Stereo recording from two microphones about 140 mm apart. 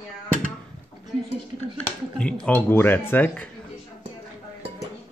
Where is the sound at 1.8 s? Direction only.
10° left (ahead or behind).